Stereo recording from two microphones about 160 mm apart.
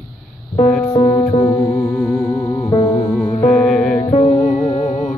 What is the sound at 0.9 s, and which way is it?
Music, 25° left (ahead or behind).